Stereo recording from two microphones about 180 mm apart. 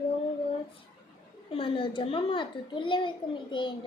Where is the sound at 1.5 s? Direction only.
30° left (ahead or behind).